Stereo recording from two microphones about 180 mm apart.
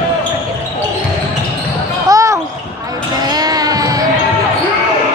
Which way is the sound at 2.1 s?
20° right (ahead or behind).